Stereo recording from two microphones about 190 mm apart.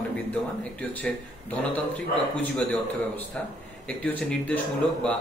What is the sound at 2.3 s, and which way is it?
Speech, 10° left (ahead or behind).